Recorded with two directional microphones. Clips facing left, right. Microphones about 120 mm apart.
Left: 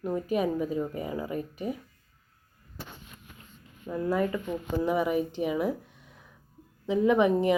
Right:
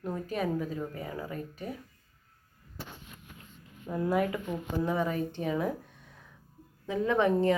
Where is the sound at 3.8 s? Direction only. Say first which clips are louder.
Left 1 dB; 5° right (ahead or behind).